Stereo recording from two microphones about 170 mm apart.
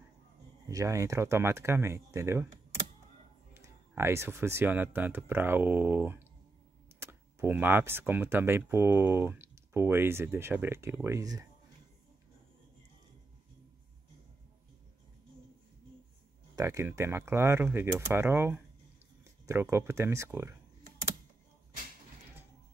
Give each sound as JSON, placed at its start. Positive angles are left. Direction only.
{"t": 0.7, "sound": "speech", "side_deg": -20}
{"t": 3.5, "sound": "speech", "side_deg": -15}
{"t": 16.5, "sound": "speech", "side_deg": -15}